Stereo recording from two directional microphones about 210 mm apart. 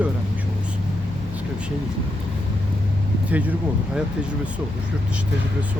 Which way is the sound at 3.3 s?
5° right (ahead or behind).